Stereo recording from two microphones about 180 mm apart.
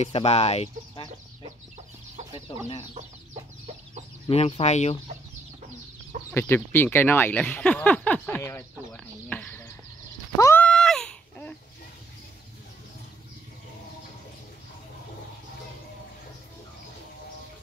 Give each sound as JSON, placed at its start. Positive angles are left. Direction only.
{"t": 0.0, "sound": "speech", "side_deg": 35}
{"t": 4.3, "sound": "speech", "side_deg": 35}
{"t": 6.3, "sound": "speech", "side_deg": 15}
{"t": 8.9, "sound": "a sound", "side_deg": 5}